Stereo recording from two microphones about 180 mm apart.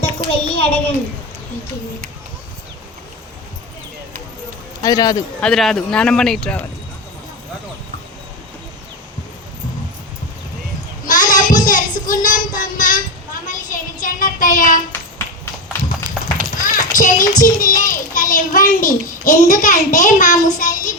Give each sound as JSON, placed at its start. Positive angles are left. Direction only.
{"t": 0.3, "sound": "a child's voice", "side_deg": 30}
{"t": 4.8, "sound": "a man's voice", "side_deg": 20}
{"t": 5.4, "sound": "a man's voice", "side_deg": 0}
{"t": 11.0, "sound": "child singing", "side_deg": 45}
{"t": 16.1, "sound": "horse", "side_deg": -25}
{"t": 16.6, "sound": "a child's voice", "side_deg": 50}